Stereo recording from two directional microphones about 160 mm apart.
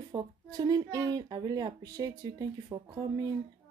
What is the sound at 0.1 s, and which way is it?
Speech, 25° right (ahead or behind).